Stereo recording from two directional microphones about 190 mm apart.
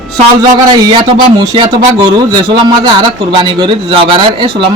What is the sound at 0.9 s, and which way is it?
A man's voice, 25° right (ahead or behind).